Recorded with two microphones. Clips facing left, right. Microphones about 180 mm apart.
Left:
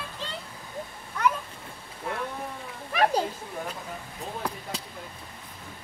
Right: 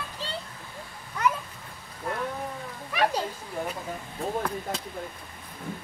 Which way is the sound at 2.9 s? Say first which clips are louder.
Left 2 dB; 40° left (ahead or behind).